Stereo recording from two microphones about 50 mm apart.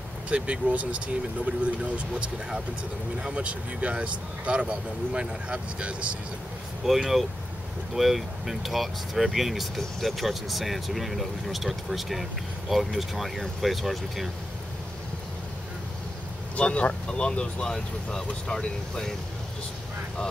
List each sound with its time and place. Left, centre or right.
0.3 s speech: right
6.9 s speech: centre
16.5 s speech: left